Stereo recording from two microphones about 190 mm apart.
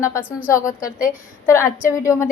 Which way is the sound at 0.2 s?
10° right (ahead or behind).